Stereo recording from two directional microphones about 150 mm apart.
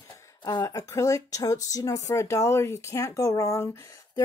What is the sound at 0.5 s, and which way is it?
Speech, 25° left (ahead or behind).